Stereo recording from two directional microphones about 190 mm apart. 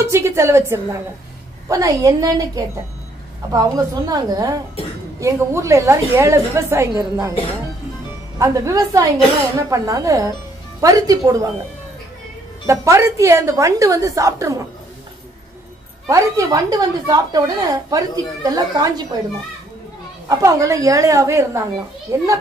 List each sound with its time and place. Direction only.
0.0 s a woman's voice: 15° right (ahead or behind)
8.4 s a woman's voice: 15° right (ahead or behind)
12.6 s a woman's voice: 15° right (ahead or behind)
16.1 s a woman's voice: 15° right (ahead or behind)
20.2 s a woman's voice: 15° right (ahead or behind)